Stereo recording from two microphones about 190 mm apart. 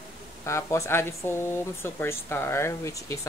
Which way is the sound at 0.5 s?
15° left (ahead or behind).